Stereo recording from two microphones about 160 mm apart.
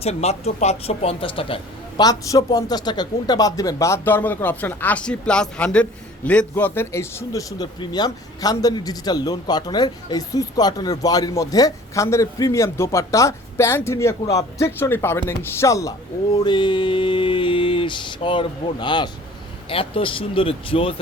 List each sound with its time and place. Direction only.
0.0 s a man's voice: 40° left (ahead or behind); by 16.0 s 20° left (ahead or behind)
16.4 s mantra: 30° left (ahead or behind)